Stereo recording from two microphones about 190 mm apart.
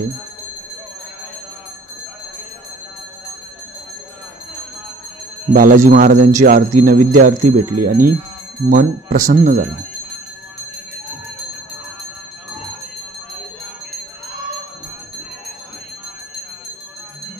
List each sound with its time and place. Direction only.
5.5 s speech: 45° right (ahead or behind)